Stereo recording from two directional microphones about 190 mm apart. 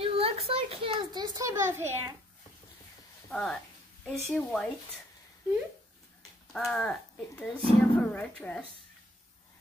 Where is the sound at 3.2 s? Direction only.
Centre (ahead or behind).